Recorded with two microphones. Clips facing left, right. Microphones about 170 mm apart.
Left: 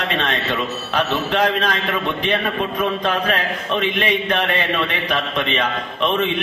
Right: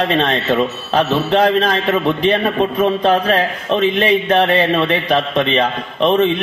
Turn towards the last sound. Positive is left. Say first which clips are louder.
# right 6 dB
turn(degrees=-35)  # may be behind; listen again after turning